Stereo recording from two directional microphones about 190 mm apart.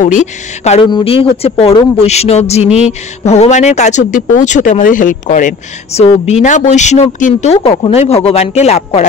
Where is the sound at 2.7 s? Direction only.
5° right (ahead or behind).